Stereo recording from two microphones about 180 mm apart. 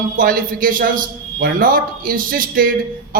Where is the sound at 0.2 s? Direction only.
50° right (ahead or behind).